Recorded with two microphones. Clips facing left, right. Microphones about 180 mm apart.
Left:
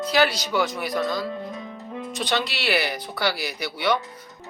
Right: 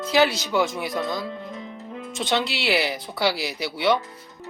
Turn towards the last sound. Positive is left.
turn(degrees=-25)  # may be behind; listen again after turning